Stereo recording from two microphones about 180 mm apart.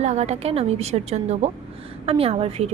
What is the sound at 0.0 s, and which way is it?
A woman's voice, 40° right (ahead or behind).